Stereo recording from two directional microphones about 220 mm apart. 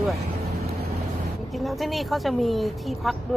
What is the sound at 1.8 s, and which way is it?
A woman's voice, centre (ahead or behind).